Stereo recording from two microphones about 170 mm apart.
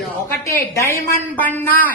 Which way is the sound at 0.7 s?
15° left (ahead or behind).